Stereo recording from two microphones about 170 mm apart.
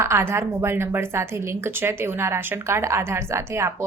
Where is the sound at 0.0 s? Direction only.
15° right (ahead or behind).